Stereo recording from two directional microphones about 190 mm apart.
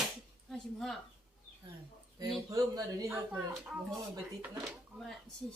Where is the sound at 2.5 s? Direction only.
15° right (ahead or behind).